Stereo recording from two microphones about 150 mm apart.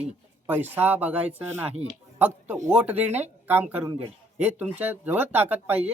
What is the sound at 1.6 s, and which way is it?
Speech, 45° right (ahead or behind).